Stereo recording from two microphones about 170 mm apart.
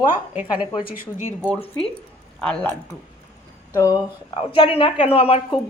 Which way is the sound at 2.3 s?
5° left (ahead or behind).